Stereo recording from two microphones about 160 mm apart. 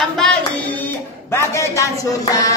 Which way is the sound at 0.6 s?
10° left (ahead or behind).